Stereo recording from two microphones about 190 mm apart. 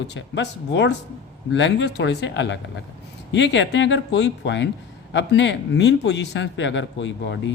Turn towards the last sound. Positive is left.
turn(degrees=70)  # may be behind; listen again after turning